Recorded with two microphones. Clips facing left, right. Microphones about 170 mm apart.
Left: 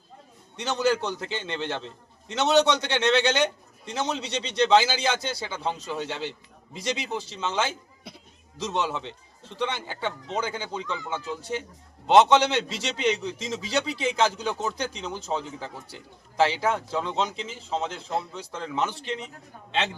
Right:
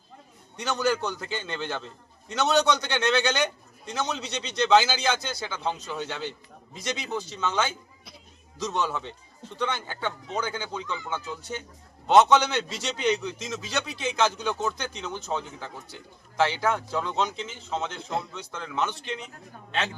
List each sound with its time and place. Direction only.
0.5 s a man's voice: 25° left (ahead or behind)
12.0 s a man's voice: 30° left (ahead or behind)